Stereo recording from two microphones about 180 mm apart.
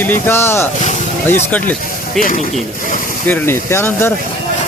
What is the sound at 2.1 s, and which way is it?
Speech, 50° left (ahead or behind).